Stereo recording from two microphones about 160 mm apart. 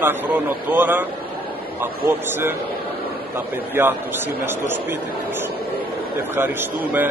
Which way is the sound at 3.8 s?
15° right (ahead or behind).